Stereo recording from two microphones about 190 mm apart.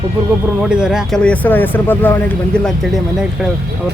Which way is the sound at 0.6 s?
5° right (ahead or behind).